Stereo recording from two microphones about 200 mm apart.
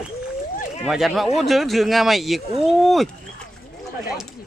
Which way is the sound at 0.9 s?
Centre (ahead or behind).